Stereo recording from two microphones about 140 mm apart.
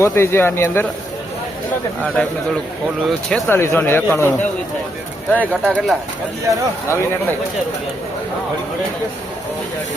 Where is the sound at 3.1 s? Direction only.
5° left (ahead or behind).